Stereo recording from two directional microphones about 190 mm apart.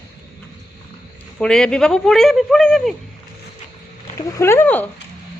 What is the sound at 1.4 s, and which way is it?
Speech, 5° left (ahead or behind).